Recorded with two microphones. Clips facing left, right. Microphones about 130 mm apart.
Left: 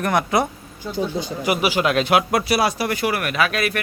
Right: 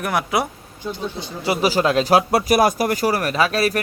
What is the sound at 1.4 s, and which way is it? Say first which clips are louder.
Speech: right 2 dB; 35° right (ahead or behind).